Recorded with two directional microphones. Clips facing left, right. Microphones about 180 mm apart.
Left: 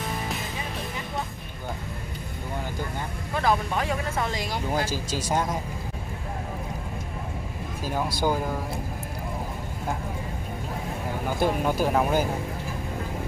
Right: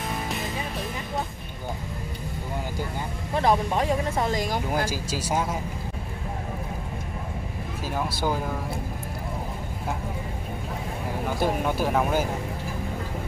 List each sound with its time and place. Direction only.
3.3 s speech: 30° right (ahead or behind)
4.8 s speech: 10° right (ahead or behind)
7.8 s speech: centre (ahead or behind)
11.2 s speech: centre (ahead or behind)